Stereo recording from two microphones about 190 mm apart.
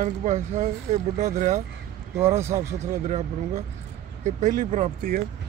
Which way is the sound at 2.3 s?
15° right (ahead or behind).